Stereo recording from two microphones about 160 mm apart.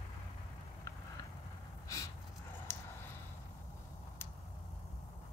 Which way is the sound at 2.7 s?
15° left (ahead or behind).